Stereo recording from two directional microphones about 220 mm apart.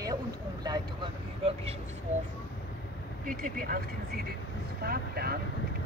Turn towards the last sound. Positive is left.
turn(degrees=-45)  # may be behind; listen again after turning